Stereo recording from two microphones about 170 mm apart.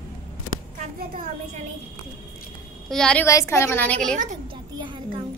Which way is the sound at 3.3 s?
15° left (ahead or behind).